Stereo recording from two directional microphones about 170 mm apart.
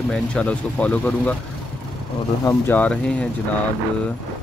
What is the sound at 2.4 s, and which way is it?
Speech, 10° left (ahead or behind).